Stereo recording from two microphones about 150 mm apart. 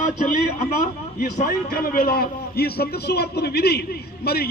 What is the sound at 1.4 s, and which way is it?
A man's voice, 75° left (ahead or behind).